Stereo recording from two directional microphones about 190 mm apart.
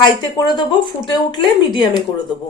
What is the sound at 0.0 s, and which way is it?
Speech, 20° left (ahead or behind).